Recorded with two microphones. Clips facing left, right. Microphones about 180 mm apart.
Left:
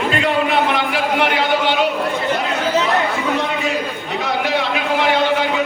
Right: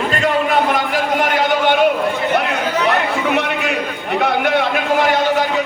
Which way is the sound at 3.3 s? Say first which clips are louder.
Right 1 dB; 70° right (ahead or behind).